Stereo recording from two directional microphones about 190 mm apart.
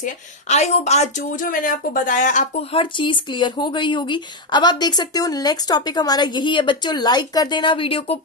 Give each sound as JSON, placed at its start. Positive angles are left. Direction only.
{"t": 0.0, "sound": "a woman's voice", "side_deg": 35}
{"t": 2.7, "sound": "speech", "side_deg": 25}